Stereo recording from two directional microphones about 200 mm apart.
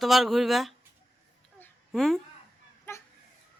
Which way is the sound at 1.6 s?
Centre (ahead or behind).